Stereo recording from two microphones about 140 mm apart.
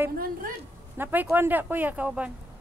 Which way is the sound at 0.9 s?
15° right (ahead or behind).